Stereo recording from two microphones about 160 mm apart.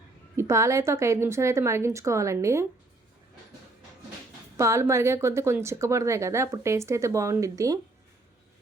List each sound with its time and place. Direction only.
0.3 s a woman's voice: 15° right (ahead or behind)
4.5 s a woman's voice: 20° right (ahead or behind)